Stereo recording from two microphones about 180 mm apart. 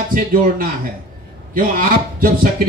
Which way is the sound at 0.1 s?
50° right (ahead or behind).